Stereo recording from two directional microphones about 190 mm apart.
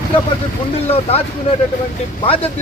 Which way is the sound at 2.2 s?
30° left (ahead or behind).